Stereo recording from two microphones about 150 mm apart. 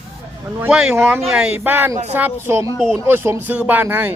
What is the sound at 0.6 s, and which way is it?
Speech, 5° right (ahead or behind).